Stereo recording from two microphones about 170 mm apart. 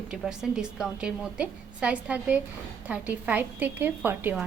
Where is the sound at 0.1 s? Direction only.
5° right (ahead or behind).